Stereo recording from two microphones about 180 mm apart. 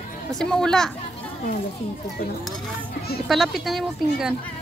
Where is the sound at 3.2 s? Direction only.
Centre (ahead or behind).